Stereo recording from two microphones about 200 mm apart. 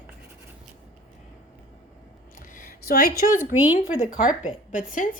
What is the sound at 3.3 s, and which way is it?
Speech, 10° right (ahead or behind).